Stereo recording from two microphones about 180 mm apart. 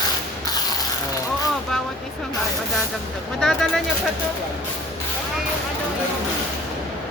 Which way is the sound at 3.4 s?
Centre (ahead or behind).